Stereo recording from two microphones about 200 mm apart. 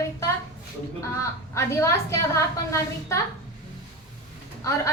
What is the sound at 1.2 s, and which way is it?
A woman's voice, 15° left (ahead or behind).